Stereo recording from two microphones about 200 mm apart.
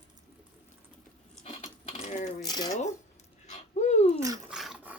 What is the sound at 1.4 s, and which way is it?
Mechanisms, 30° left (ahead or behind).